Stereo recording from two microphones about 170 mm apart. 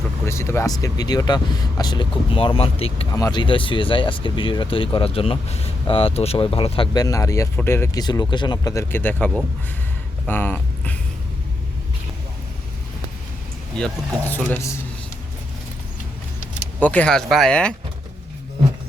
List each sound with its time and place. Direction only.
0.3 s speech: 15° left (ahead or behind); by 3.1 s 35° left (ahead or behind)
3.1 s speech: 20° left (ahead or behind)
13.7 s speech: 5° left (ahead or behind)
16.8 s speech: 10° left (ahead or behind)